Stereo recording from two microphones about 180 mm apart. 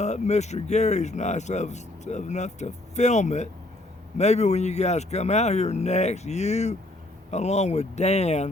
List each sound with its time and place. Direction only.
0.0 s speech: 40° left (ahead or behind)